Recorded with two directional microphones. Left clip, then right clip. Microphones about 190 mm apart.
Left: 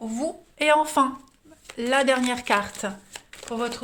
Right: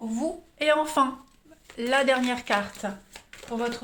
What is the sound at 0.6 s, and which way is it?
Speech, 35° left (ahead or behind).